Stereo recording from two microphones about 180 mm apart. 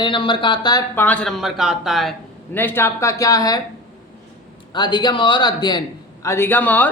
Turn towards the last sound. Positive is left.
turn(degrees=10)  # may be behind; listen again after turning